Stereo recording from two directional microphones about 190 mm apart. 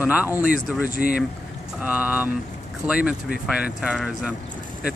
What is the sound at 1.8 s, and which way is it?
Speech, 10° right (ahead or behind).